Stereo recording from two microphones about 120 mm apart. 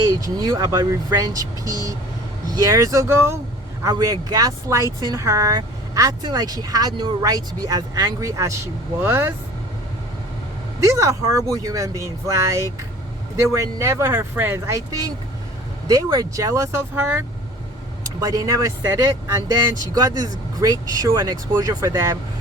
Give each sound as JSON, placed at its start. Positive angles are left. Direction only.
{"t": 0.1, "sound": "speech", "side_deg": -30}
{"t": 3.8, "sound": "speech", "side_deg": -30}
{"t": 10.8, "sound": "speech", "side_deg": -25}
{"t": 18.2, "sound": "speech", "side_deg": -30}